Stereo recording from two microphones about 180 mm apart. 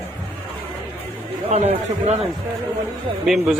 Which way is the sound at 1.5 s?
35° right (ahead or behind).